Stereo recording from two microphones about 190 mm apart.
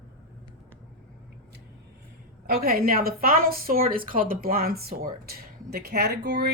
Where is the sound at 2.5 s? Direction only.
50° right (ahead or behind).